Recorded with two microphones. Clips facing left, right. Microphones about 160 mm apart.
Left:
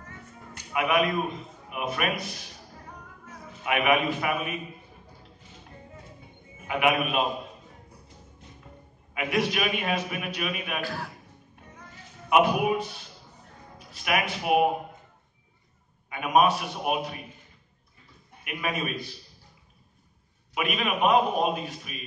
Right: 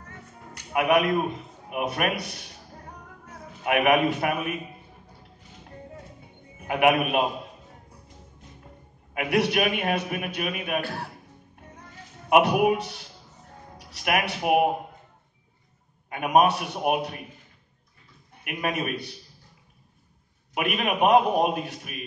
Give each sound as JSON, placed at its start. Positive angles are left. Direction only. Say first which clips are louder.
{"t": 0.7, "sound": "a man's voice", "louder": "right 3 dB", "side_deg": -60}
{"t": 3.6, "sound": "a man's voice", "louder": "right 3 dB", "side_deg": -60}
{"t": 6.7, "sound": "a man's voice", "louder": "right 4 dB", "side_deg": -55}
{"t": 9.1, "sound": "a man's voice", "louder": "right 3 dB", "side_deg": -60}
{"t": 12.3, "sound": "a man's voice", "louder": "right 3 dB", "side_deg": -60}
{"t": 16.1, "sound": "a man's voice", "louder": "right 2 dB", "side_deg": -60}
{"t": 18.4, "sound": "a man's voice", "louder": "right 2 dB", "side_deg": -60}
{"t": 20.5, "sound": "a man's voice", "louder": "right 2 dB", "side_deg": -60}